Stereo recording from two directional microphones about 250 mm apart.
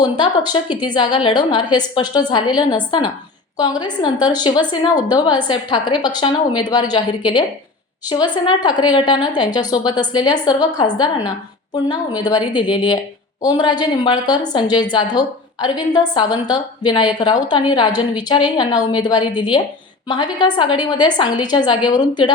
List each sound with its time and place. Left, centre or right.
0.0 s a woman's voice: centre